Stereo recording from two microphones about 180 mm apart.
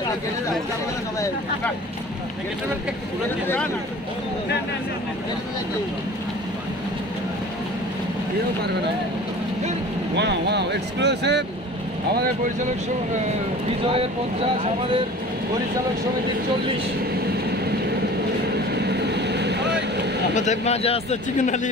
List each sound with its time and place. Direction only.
10.1 s speech: 70° right (ahead or behind)
13.8 s speech: 30° right (ahead or behind)
18.7 s vehicle: 65° right (ahead or behind)
20.3 s speech: 40° left (ahead or behind)